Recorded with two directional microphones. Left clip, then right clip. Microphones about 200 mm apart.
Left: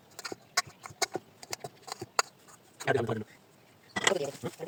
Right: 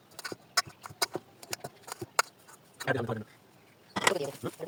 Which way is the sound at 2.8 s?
30° left (ahead or behind).